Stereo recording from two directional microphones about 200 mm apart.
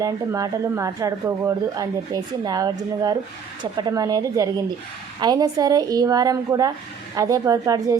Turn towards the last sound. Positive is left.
turn(degrees=-15)  # may be behind; listen again after turning